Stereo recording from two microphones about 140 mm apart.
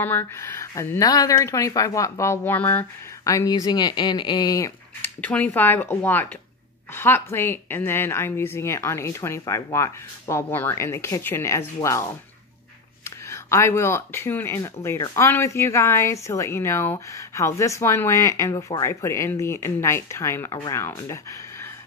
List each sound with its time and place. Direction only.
0.0 s speech: 15° left (ahead or behind)
3.3 s speech: 25° left (ahead or behind)
5.2 s speech: 10° left (ahead or behind)
13.3 s speech: 20° left (ahead or behind)